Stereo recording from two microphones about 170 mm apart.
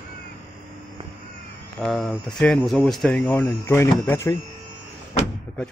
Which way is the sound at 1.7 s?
Centre (ahead or behind).